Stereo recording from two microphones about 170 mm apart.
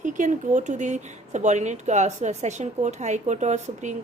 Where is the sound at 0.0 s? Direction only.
50° right (ahead or behind).